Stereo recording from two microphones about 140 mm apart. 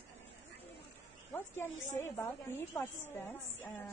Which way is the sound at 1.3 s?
15° left (ahead or behind).